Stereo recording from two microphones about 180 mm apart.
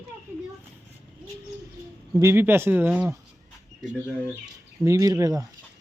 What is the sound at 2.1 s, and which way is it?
Speech, 10° right (ahead or behind).